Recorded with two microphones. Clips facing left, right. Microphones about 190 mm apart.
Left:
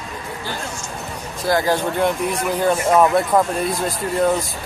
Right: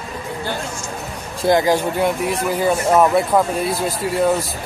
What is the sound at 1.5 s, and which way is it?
Speech, 15° right (ahead or behind).